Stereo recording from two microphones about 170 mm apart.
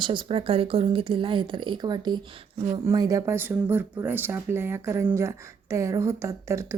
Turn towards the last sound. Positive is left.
turn(degrees=-15)  # may be behind; listen again after turning